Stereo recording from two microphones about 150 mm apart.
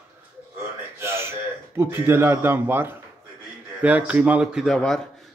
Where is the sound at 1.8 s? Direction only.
15° right (ahead or behind); by 4.9 s 5° left (ahead or behind).